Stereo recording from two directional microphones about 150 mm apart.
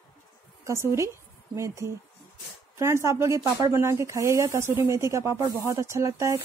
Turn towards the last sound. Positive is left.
turn(degrees=-20)  # may be behind; listen again after turning